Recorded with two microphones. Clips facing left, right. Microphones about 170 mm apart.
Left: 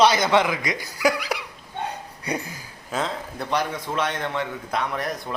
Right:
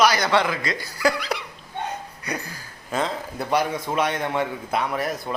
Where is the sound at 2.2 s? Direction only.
25° left (ahead or behind).